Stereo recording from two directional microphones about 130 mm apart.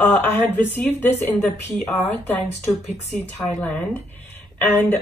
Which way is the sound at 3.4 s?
15° left (ahead or behind).